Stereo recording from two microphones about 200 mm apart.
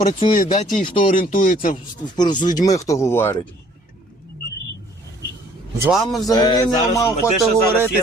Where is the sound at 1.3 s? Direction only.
40° left (ahead or behind).